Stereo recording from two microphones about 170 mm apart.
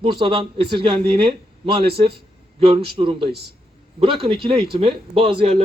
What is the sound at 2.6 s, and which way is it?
Speech, 30° right (ahead or behind).